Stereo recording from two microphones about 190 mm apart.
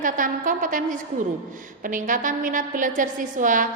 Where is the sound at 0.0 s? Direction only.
45° right (ahead or behind).